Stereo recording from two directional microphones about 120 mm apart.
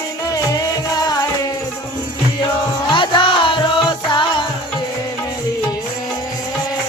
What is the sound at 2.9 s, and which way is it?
Music, 40° left (ahead or behind).